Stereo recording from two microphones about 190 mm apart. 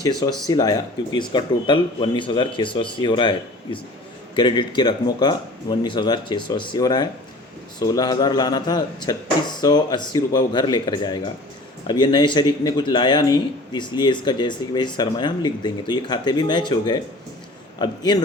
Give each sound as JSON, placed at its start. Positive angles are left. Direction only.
{"t": 0.0, "sound": "speech", "side_deg": 20}